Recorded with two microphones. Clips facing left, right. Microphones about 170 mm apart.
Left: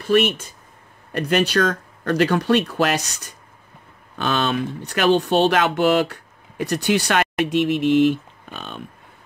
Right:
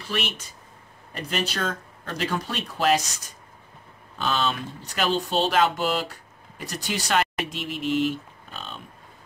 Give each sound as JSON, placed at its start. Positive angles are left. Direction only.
{"t": 0.0, "sound": "speech", "side_deg": 50}
{"t": 1.1, "sound": "speech", "side_deg": 70}